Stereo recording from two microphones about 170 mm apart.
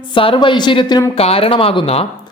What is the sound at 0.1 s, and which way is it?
Speech, 30° left (ahead or behind).